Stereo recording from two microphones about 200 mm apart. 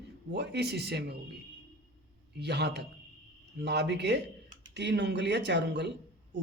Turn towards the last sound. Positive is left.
turn(degrees=-60)  # may be behind; listen again after turning